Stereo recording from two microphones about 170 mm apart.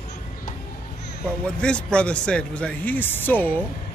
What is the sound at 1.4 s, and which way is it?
Speech, 5° left (ahead or behind).